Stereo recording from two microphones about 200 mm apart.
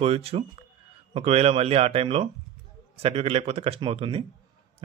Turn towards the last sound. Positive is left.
turn(degrees=-25)  # may be behind; listen again after turning